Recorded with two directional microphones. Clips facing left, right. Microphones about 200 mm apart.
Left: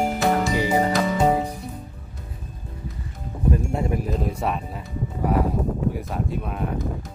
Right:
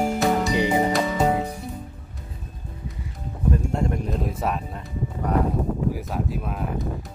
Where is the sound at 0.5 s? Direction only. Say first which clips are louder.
Even; 20° right (ahead or behind).